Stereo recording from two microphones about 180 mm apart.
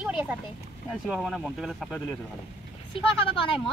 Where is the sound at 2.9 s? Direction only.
30° left (ahead or behind).